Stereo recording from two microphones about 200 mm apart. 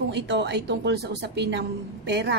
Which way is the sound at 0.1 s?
60° right (ahead or behind).